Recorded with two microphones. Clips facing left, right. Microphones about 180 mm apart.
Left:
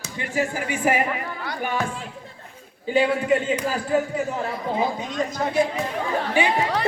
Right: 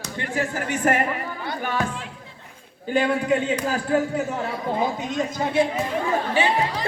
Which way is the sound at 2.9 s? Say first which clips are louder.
Left 1 dB; 5° left (ahead or behind).